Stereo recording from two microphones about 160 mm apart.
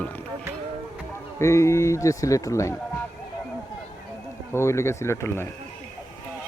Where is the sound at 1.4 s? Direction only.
20° left (ahead or behind).